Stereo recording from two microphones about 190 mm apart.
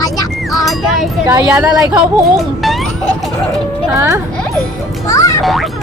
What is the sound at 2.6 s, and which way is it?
Music, centre (ahead or behind).